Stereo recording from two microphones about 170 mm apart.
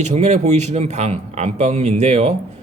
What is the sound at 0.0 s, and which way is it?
A man's voice, 40° right (ahead or behind).